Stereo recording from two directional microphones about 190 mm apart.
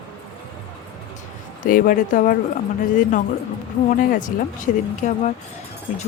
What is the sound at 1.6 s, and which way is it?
Speech, 45° left (ahead or behind).